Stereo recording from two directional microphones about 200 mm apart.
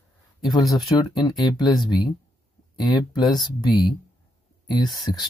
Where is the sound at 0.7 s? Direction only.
20° left (ahead or behind).